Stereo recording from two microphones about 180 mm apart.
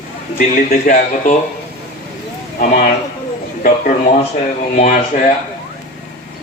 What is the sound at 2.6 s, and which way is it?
Speech, 45° left (ahead or behind).